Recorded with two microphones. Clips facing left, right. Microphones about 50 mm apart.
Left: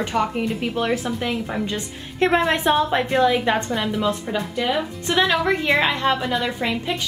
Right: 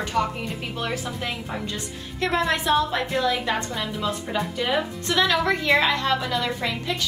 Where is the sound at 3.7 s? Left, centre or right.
Centre.